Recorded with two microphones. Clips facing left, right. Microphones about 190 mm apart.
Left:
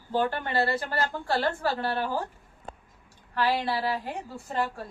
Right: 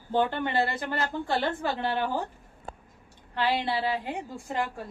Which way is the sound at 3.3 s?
20° right (ahead or behind).